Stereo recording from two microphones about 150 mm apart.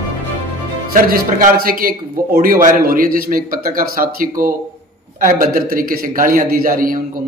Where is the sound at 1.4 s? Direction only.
70° right (ahead or behind).